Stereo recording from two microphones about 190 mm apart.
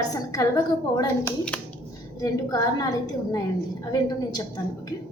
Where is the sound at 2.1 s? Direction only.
20° left (ahead or behind).